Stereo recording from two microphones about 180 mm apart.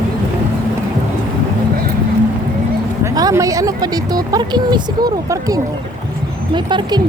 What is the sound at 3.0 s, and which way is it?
Speech, 20° right (ahead or behind).